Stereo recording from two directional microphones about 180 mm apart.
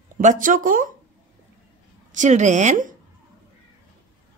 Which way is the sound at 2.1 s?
40° right (ahead or behind).